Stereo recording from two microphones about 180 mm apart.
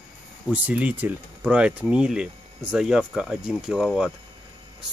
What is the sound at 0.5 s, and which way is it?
Speech, 10° right (ahead or behind).